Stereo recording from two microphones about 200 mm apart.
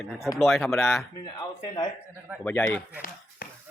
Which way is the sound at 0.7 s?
10° left (ahead or behind).